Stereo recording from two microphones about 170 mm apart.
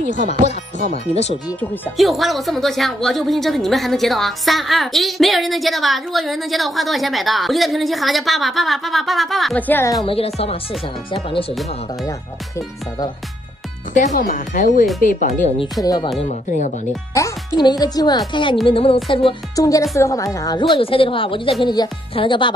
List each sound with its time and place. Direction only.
1.1 s speech: 35° left (ahead or behind)
1.6 s speech: centre (ahead or behind)
10.0 s speech: 35° left (ahead or behind)
13.9 s speech: 50° left (ahead or behind)
15.8 s a woman's voice: 25° left (ahead or behind)
16.3 s speech: 45° left (ahead or behind)
17.1 s a woman's voice: 20° left (ahead or behind)
19.5 s a woman's voice: 20° left (ahead or behind)